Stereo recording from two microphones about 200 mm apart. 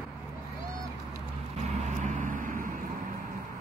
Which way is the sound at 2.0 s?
40° right (ahead or behind).